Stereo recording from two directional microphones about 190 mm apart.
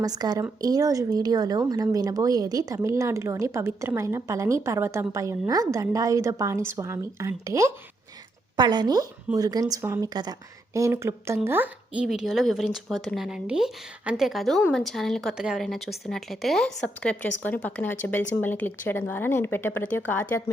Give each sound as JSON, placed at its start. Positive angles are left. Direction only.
{"t": 0.0, "sound": "a woman's voice", "side_deg": -20}